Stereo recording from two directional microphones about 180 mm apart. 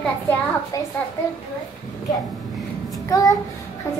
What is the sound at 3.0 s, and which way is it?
Speech, 20° left (ahead or behind).